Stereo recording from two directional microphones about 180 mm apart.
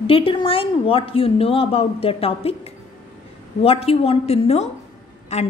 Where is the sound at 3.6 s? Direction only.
35° left (ahead or behind).